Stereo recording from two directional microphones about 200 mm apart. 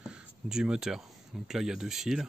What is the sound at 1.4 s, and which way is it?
Speech, centre (ahead or behind).